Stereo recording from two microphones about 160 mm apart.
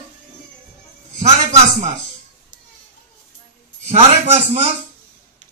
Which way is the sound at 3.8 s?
40° right (ahead or behind).